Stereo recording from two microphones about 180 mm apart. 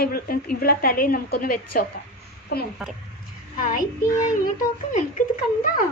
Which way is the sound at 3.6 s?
50° left (ahead or behind).